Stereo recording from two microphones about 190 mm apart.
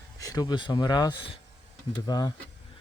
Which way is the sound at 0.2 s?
20° left (ahead or behind).